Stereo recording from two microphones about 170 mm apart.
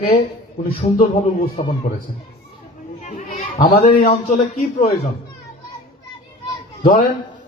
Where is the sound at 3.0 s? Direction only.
45° left (ahead or behind).